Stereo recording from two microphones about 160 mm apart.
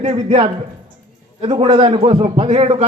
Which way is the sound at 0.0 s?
35° right (ahead or behind).